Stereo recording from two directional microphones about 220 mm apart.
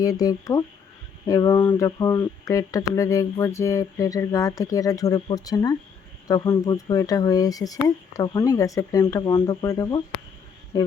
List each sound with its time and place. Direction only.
0.0 s speech: 15° left (ahead or behind)